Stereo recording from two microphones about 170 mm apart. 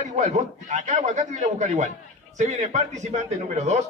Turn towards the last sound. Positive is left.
turn(degrees=-45)  # may be behind; listen again after turning